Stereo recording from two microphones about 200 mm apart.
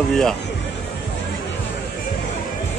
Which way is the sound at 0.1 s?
Centre (ahead or behind).